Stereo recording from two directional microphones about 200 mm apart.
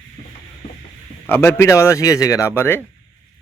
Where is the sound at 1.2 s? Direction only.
10° left (ahead or behind).